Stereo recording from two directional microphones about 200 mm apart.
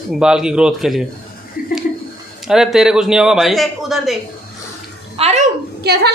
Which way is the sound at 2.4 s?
Centre (ahead or behind).